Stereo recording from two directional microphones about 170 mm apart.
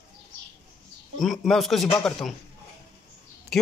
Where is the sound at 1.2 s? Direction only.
Centre (ahead or behind).